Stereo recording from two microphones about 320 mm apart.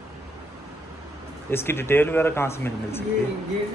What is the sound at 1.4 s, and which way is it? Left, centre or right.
Speech, centre.